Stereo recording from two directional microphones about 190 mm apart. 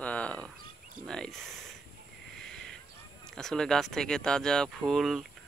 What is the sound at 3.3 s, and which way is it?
Speech, 5° left (ahead or behind).